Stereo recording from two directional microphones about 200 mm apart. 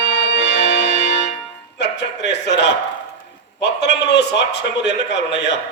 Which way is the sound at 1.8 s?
60° left (ahead or behind).